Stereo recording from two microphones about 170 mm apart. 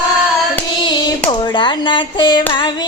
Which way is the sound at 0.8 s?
30° left (ahead or behind).